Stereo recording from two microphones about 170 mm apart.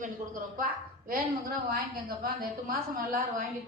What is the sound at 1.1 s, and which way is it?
A woman's voice, 60° right (ahead or behind).